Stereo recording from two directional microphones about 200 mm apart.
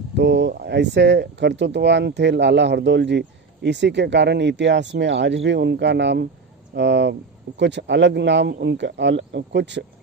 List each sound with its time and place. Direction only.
0.1 s speech: 60° right (ahead or behind)